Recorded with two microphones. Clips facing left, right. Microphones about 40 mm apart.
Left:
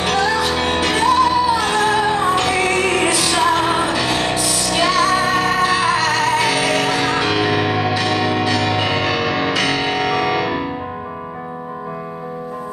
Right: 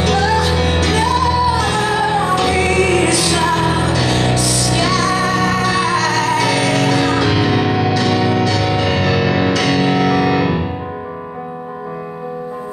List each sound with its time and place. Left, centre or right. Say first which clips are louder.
0.6 s music: right 1 dB; centre
9.5 s music: right 3 dB; centre
9.8 s music: right 4 dB; centre